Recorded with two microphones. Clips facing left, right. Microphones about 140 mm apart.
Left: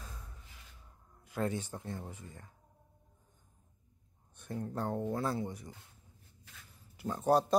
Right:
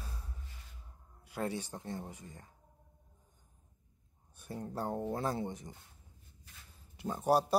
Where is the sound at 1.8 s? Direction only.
40° right (ahead or behind).